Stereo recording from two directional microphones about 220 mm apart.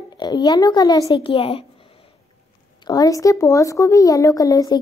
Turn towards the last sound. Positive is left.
turn(degrees=15)  # may be behind; listen again after turning